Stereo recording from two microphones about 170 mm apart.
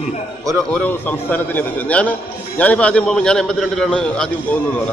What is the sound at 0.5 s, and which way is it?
A man's voice, 5° left (ahead or behind).